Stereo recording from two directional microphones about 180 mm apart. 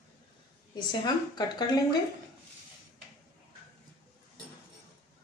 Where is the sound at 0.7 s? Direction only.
25° left (ahead or behind).